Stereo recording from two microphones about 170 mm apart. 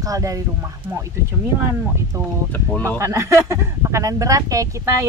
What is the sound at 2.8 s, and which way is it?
Speech, 15° right (ahead or behind).